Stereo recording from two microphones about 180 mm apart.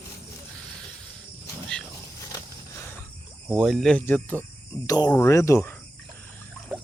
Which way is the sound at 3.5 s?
Centre (ahead or behind).